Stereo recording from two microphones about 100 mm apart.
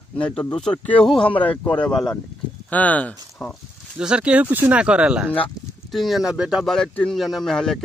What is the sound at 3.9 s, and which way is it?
Speech, 10° right (ahead or behind).